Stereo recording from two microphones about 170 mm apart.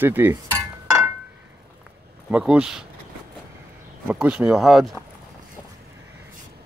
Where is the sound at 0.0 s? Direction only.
10° right (ahead or behind).